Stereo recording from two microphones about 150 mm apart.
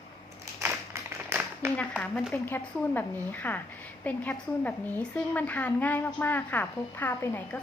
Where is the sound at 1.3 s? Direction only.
15° right (ahead or behind).